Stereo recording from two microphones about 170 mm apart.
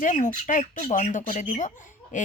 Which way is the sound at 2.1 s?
50° left (ahead or behind).